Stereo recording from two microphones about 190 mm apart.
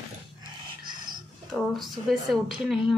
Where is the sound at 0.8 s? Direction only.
25° right (ahead or behind).